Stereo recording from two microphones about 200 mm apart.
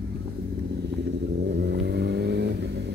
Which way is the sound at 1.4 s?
60° right (ahead or behind).